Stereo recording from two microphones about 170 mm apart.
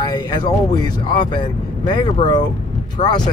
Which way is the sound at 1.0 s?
25° left (ahead or behind).